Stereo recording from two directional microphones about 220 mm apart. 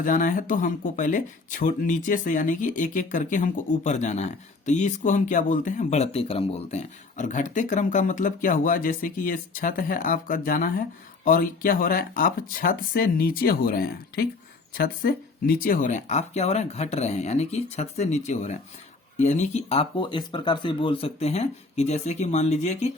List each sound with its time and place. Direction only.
0.0 s speech: 35° left (ahead or behind)